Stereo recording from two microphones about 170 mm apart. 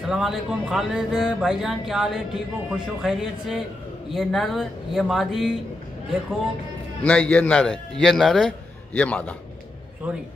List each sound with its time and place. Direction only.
0.1 s speech: centre (ahead or behind)
7.0 s speech: 5° left (ahead or behind)